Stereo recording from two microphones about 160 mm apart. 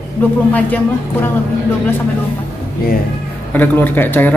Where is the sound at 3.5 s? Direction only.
10° left (ahead or behind).